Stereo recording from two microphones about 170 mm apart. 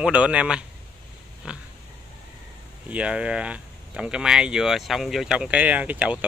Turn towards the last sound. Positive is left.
turn(degrees=-10)  # may be behind; listen again after turning